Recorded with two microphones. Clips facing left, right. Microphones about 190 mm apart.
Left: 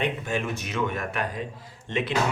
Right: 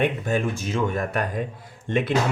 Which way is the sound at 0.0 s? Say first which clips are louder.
Right 5 dB; 40° right (ahead or behind).